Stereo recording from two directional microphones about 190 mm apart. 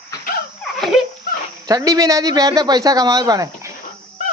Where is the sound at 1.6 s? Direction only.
20° right (ahead or behind).